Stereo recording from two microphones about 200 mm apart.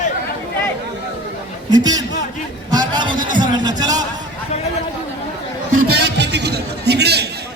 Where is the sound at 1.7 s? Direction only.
20° right (ahead or behind).